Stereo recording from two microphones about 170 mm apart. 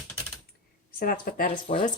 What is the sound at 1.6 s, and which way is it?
Speech, 40° left (ahead or behind).